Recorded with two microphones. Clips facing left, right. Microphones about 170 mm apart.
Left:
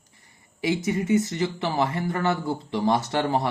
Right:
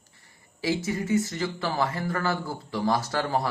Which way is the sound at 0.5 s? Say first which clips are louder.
Left 3 dB; 20° left (ahead or behind).